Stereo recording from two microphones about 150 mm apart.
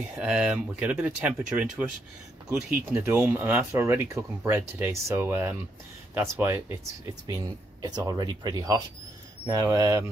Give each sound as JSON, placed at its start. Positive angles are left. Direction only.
{"t": 0.1, "sound": "speech", "side_deg": -5}